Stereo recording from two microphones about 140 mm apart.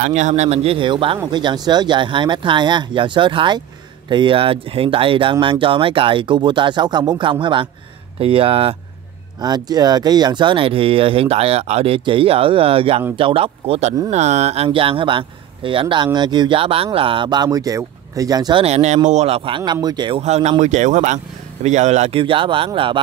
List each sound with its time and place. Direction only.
0.0 s speech: 55° right (ahead or behind)
9.4 s speech: 30° right (ahead or behind)
18.6 s speech: 50° right (ahead or behind); by 20.2 s 30° right (ahead or behind)
20.2 s speech: 50° right (ahead or behind)
22.2 s speech: 40° right (ahead or behind)